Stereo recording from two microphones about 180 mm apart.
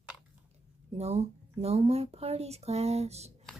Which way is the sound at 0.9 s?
35° right (ahead or behind).